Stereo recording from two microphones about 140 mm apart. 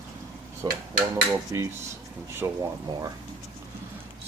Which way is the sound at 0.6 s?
30° right (ahead or behind).